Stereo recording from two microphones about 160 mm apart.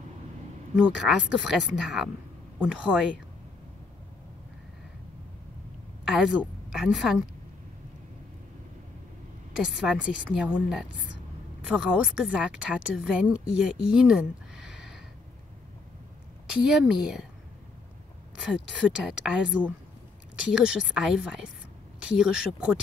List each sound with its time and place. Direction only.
0.7 s speech: 5° right (ahead or behind)
6.0 s a woman's voice: 5° right (ahead or behind)
9.6 s speech: 5° right (ahead or behind)
13.8 s a sound: 5° right (ahead or behind)
16.4 s speech: 5° right (ahead or behind)
18.4 s speech: 5° right (ahead or behind)